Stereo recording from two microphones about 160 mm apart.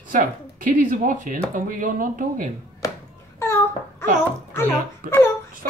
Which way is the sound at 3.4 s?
15° left (ahead or behind).